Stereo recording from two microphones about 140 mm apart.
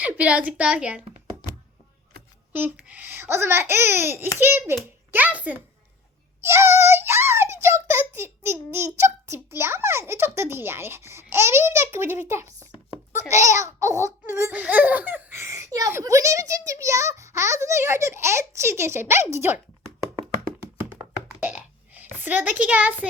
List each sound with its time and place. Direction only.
0.0 s a child's voice: 10° right (ahead or behind)
2.5 s a child's voice: 10° right (ahead or behind)
21.4 s a sound: 10° right (ahead or behind)